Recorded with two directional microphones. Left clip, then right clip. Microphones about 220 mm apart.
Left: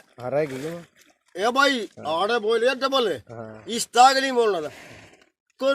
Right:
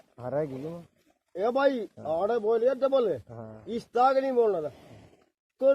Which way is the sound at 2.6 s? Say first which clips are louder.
Left 3 dB; 25° left (ahead or behind).